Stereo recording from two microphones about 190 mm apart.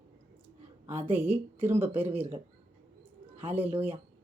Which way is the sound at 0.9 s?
10° right (ahead or behind).